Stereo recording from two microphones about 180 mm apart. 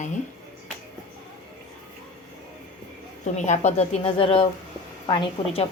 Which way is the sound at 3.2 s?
40° left (ahead or behind).